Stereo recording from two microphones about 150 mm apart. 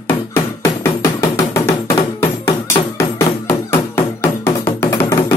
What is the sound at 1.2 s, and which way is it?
Music, 20° left (ahead or behind).